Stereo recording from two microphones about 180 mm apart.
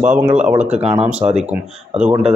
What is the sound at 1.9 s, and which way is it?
Speech, 5° right (ahead or behind).